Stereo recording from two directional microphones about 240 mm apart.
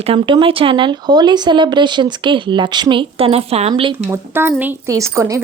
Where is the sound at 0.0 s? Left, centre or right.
Right.